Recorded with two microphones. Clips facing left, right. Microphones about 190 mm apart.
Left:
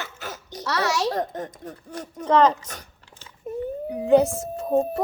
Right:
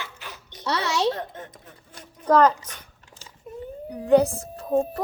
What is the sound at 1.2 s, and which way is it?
Speech, 40° left (ahead or behind).